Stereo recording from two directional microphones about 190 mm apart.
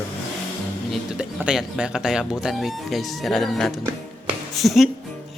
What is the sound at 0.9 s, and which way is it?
Speech, 5° right (ahead or behind).